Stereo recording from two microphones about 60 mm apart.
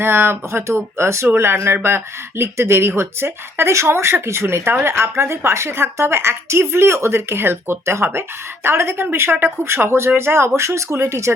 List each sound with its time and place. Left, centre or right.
0.0 s speech: right